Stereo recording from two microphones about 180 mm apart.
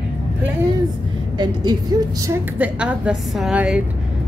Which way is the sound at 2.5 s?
5° right (ahead or behind).